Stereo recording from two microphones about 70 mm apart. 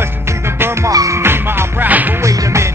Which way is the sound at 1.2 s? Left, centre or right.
Right.